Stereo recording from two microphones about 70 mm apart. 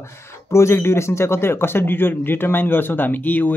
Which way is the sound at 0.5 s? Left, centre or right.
Left.